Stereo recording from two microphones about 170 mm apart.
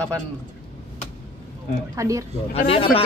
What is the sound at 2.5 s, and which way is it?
Speech, 35° left (ahead or behind).